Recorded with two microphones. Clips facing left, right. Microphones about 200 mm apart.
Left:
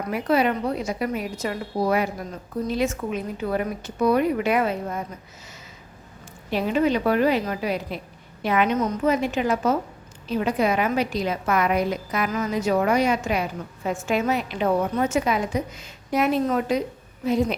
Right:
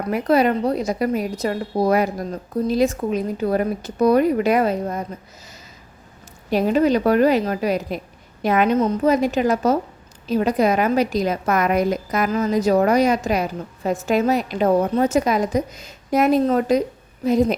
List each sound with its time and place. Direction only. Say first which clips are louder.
0.1 s a woman's voice: right 4 dB; 40° right (ahead or behind)
6.5 s a woman's voice: right 4 dB; 45° right (ahead or behind)